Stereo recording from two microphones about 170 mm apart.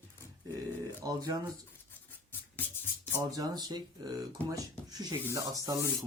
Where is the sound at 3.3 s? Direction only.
20° right (ahead or behind).